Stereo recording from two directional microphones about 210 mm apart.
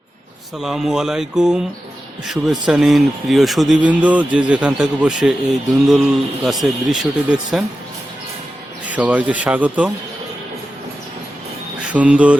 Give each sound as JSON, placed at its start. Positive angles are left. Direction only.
{"t": 0.6, "sound": "speech", "side_deg": 0}
{"t": 8.9, "sound": "speech", "side_deg": -5}
{"t": 11.8, "sound": "speech", "side_deg": -5}